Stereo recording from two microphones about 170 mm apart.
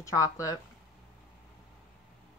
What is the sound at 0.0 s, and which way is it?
Speech, 20° left (ahead or behind).